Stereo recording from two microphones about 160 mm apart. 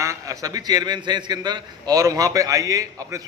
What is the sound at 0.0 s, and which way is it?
A man's voice, 20° right (ahead or behind).